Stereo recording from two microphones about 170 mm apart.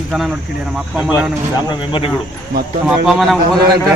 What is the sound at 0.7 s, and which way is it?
Speech, 5° right (ahead or behind).